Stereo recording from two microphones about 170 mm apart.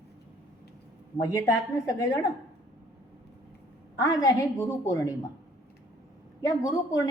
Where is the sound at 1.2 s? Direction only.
20° left (ahead or behind).